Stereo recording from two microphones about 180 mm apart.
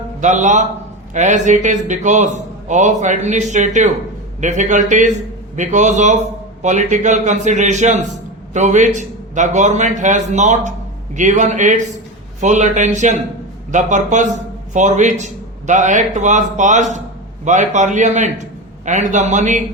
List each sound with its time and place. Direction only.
0.2 s a man's voice: 40° right (ahead or behind)